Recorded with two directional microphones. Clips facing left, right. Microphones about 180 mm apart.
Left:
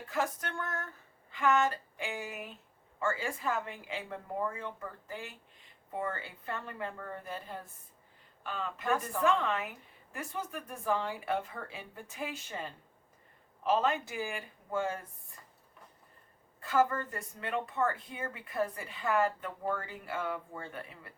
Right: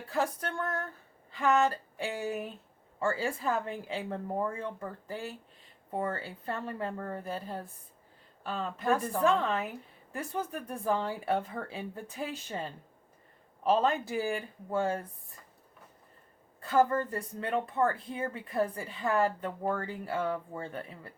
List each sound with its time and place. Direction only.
0.1 s speech: 35° right (ahead or behind)
16.6 s speech: 35° right (ahead or behind)